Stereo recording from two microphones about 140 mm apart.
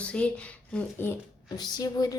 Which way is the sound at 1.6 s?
30° left (ahead or behind).